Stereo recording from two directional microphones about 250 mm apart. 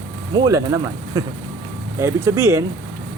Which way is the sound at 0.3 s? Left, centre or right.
Centre.